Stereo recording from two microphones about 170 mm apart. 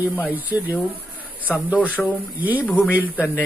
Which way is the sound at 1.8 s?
10° left (ahead or behind).